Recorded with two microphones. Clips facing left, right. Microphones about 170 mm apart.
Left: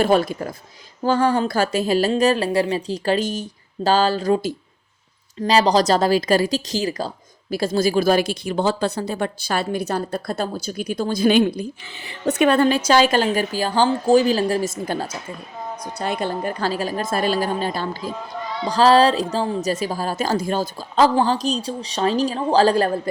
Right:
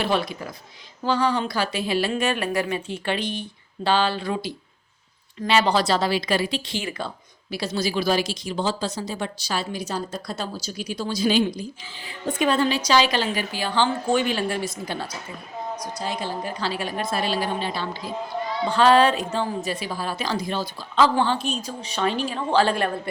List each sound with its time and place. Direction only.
0.0 s a woman's voice: 45° left (ahead or behind)
7.5 s a woman's voice: 50° left (ahead or behind)
15.8 s a woman's voice: 60° left (ahead or behind)
18.6 s a woman's voice: 35° left (ahead or behind)